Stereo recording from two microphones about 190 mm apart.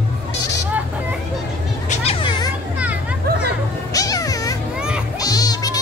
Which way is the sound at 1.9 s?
30° left (ahead or behind).